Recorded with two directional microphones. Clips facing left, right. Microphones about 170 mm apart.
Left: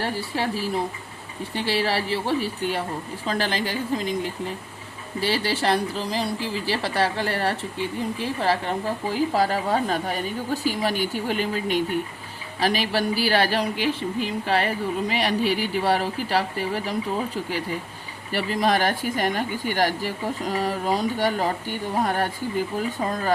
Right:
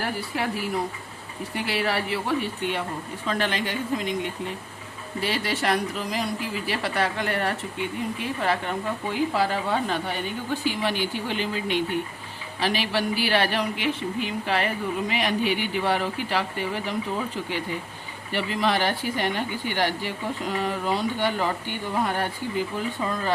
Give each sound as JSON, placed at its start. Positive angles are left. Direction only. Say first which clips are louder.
{"t": 0.0, "sound": "speech", "louder": "left 2 dB", "side_deg": 30}
{"t": 18.3, "sound": "speech", "louder": "left 2 dB", "side_deg": 40}